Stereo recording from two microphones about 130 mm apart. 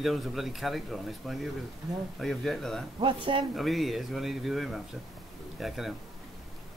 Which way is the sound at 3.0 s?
40° right (ahead or behind).